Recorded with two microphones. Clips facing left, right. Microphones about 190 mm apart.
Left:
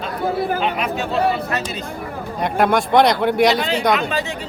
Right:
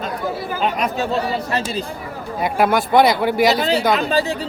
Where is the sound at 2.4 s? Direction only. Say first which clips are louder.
Even; 5° right (ahead or behind).